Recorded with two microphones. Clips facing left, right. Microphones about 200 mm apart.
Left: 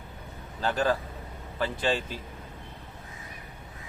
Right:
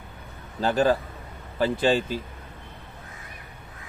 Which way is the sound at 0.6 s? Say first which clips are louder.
Right 5 dB; 30° right (ahead or behind).